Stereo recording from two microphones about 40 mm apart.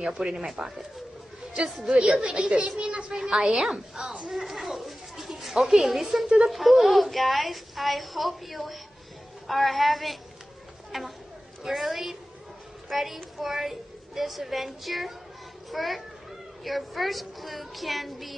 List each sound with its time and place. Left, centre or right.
0.0 s a woman's voice: centre
1.9 s a woman's voice: centre
4.3 s a sound: centre
6.5 s a woman's voice: centre